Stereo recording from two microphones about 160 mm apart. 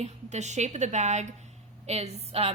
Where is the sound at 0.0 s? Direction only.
45° right (ahead or behind).